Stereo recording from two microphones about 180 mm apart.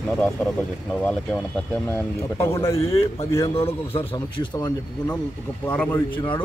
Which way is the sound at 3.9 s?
30° left (ahead or behind).